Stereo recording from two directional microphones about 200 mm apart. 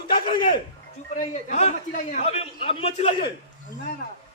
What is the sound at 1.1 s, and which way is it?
A man's voice, 35° left (ahead or behind).